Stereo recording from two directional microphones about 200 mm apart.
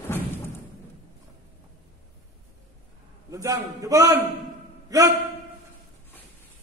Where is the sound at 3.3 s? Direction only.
15° right (ahead or behind).